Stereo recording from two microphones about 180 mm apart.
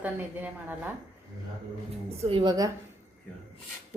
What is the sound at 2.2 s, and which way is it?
Speech, 30° right (ahead or behind).